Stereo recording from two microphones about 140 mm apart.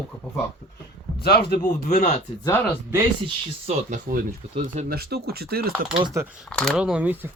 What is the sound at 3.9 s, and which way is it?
Speech, 65° right (ahead or behind).